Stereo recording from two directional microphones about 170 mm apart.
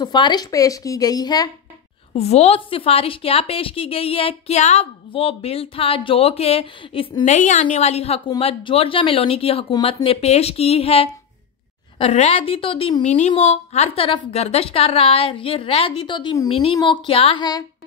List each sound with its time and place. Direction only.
0.0 s a woman's voice: 25° left (ahead or behind)
2.1 s a woman's voice: 40° left (ahead or behind)
7.3 s a woman's voice: 45° left (ahead or behind); by 17.6 s 25° left (ahead or behind)